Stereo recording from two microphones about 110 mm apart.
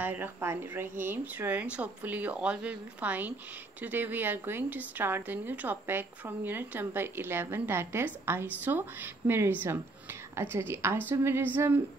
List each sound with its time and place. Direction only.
0.0 s a woman's voice: 20° right (ahead or behind)